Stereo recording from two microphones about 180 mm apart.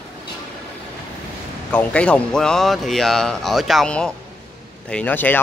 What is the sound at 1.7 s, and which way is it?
Speech, 10° left (ahead or behind).